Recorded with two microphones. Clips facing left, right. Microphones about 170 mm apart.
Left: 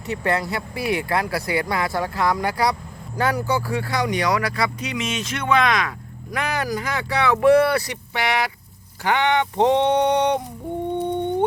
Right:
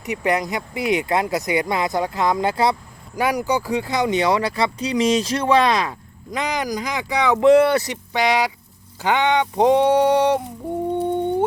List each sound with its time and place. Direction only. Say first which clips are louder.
0.0 s speech: right 2 dB; 15° right (ahead or behind); by 5.9 s 30° right (ahead or behind)
6.3 s speech: right 1 dB; 15° right (ahead or behind)